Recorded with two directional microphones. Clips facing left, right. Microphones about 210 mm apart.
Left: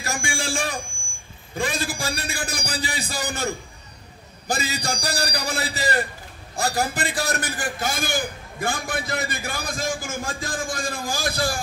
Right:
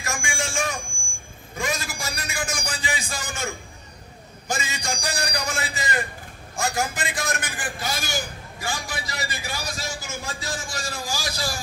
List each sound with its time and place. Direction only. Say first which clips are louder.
0.0 s a man's voice: left 2 dB; 35° left (ahead or behind); by 11.6 s 55° left (ahead or behind)